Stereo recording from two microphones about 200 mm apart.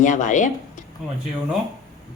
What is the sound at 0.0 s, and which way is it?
Speech, 40° left (ahead or behind).